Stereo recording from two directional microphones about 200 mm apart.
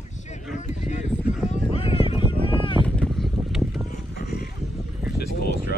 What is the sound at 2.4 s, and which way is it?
Boat, 25° left (ahead or behind).